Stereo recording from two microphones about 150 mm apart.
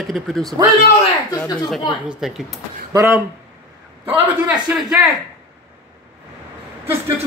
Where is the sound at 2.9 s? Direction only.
20° right (ahead or behind).